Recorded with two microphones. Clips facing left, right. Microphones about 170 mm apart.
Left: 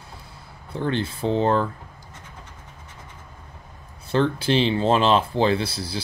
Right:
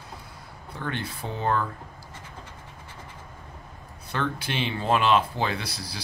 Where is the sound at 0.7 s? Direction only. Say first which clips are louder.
Left 8 dB; 30° left (ahead or behind).